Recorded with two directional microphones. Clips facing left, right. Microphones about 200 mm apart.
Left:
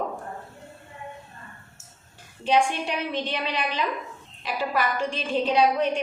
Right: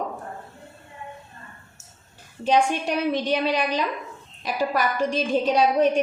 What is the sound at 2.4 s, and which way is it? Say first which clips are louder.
A woman's voice: right 2 dB; 45° right (ahead or behind).